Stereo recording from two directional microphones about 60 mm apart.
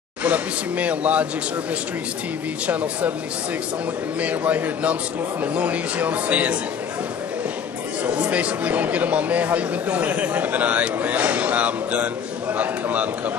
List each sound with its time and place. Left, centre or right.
0.2 s speech: right
2.6 s speech: right
4.2 s speech: right
8.0 s speech: centre